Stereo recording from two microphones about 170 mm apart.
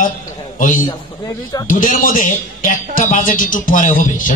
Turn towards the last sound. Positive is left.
turn(degrees=50)  # may be behind; listen again after turning